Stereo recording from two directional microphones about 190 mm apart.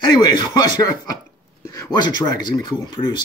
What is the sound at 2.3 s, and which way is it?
Speech, 20° left (ahead or behind).